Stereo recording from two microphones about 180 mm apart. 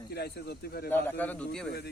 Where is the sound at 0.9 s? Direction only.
10° left (ahead or behind).